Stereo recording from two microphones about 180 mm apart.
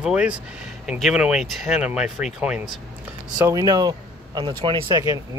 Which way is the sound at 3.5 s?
20° right (ahead or behind).